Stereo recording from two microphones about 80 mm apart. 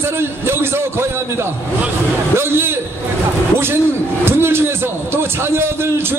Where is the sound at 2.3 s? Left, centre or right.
Right.